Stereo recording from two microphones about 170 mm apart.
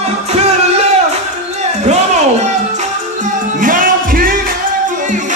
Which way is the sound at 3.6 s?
55° right (ahead or behind).